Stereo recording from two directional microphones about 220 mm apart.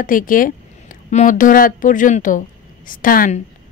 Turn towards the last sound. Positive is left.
turn(degrees=40)  # may be behind; listen again after turning